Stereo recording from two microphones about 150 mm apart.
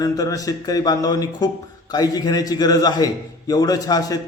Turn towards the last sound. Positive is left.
turn(degrees=25)  # may be behind; listen again after turning